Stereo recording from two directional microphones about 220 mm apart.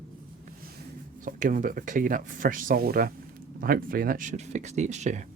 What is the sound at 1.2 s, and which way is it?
Speech, 35° right (ahead or behind).